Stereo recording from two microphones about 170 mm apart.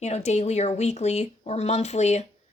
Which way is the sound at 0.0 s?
40° left (ahead or behind).